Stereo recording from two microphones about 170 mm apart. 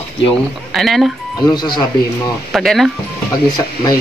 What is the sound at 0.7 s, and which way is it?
Speech, centre (ahead or behind).